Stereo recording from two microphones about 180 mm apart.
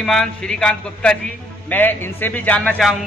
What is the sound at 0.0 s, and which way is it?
A man's voice, 5° left (ahead or behind).